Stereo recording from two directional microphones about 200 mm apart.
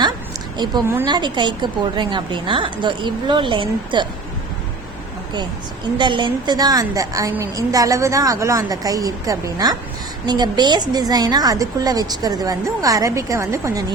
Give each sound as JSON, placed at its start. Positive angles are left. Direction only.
{"t": 0.5, "sound": "a woman's voice", "side_deg": -20}
{"t": 6.0, "sound": "a woman's voice", "side_deg": -25}